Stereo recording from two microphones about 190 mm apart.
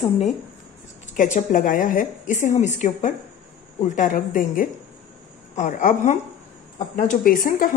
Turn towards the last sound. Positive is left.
turn(degrees=45)  # may be behind; listen again after turning